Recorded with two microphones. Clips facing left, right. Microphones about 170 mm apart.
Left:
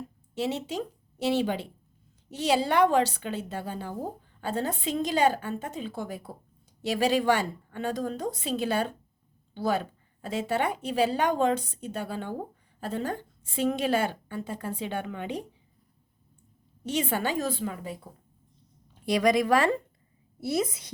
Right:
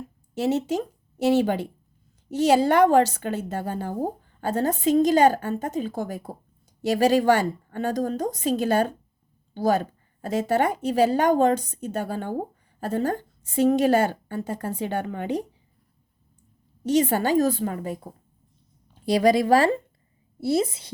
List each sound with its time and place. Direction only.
0.3 s a woman's voice: 45° right (ahead or behind)
16.8 s a woman's voice: 40° right (ahead or behind)
19.0 s a woman's voice: 30° right (ahead or behind)